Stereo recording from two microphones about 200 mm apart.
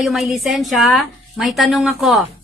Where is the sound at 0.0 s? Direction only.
Centre (ahead or behind).